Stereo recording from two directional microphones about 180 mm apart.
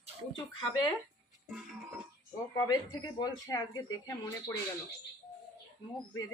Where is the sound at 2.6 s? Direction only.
20° left (ahead or behind).